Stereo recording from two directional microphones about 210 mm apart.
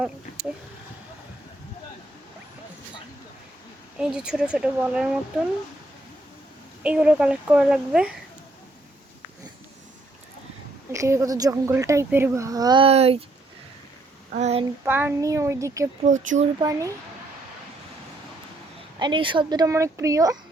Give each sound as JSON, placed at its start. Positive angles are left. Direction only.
{"t": 3.9, "sound": "speech", "side_deg": -5}
{"t": 6.8, "sound": "speech", "side_deg": -5}
{"t": 10.9, "sound": "speech", "side_deg": -15}
{"t": 14.3, "sound": "speech", "side_deg": -30}
{"t": 14.8, "sound": "speech", "side_deg": -10}
{"t": 16.0, "sound": "speech", "side_deg": -35}
{"t": 16.6, "sound": "speech", "side_deg": -15}
{"t": 18.9, "sound": "speech", "side_deg": -20}